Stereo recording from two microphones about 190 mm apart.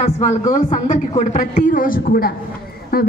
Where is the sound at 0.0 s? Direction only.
35° left (ahead or behind).